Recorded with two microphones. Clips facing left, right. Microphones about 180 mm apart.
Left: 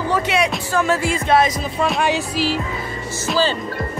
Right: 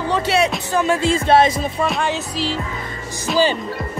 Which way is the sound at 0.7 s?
15° right (ahead or behind).